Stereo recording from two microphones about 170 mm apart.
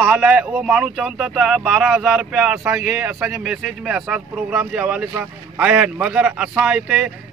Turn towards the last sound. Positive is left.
turn(degrees=-5)  # may be behind; listen again after turning